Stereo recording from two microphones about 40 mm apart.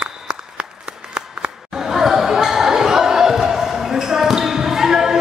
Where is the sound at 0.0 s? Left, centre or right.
Right.